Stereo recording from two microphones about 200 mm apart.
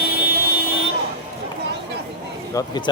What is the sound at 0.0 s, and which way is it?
Vehicle, 50° right (ahead or behind).